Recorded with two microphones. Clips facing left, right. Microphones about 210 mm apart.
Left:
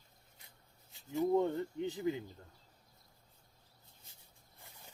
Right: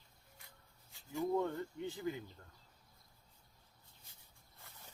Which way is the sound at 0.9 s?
20° left (ahead or behind).